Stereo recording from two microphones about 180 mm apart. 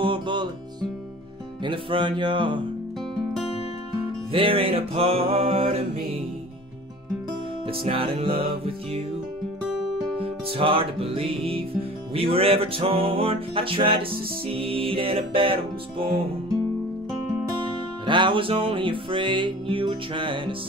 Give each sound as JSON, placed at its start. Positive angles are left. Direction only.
{"t": 0.0, "sound": "music", "side_deg": -25}
{"t": 1.6, "sound": "music", "side_deg": -30}
{"t": 4.3, "sound": "music", "side_deg": -30}
{"t": 7.6, "sound": "music", "side_deg": -30}
{"t": 10.2, "sound": "music", "side_deg": -30}
{"t": 18.0, "sound": "music", "side_deg": -25}